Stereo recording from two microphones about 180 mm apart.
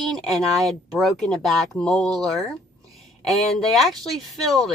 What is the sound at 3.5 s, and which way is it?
Speech, centre (ahead or behind).